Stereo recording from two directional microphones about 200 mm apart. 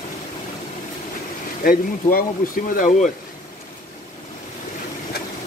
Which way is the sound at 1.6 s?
45° left (ahead or behind).